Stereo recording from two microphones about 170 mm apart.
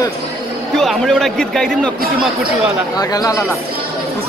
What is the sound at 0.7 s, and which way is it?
Speech, centre (ahead or behind).